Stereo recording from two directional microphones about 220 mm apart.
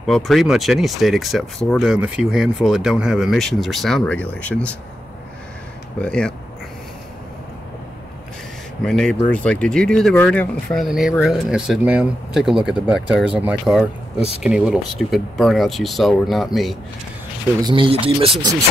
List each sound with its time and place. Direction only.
0.0 s speech: centre (ahead or behind)
5.9 s speech: 5° left (ahead or behind)
8.8 s speech: 5° left (ahead or behind)
17.6 s speech: 20° right (ahead or behind)